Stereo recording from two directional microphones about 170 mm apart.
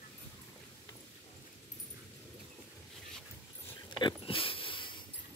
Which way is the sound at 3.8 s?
30° left (ahead or behind).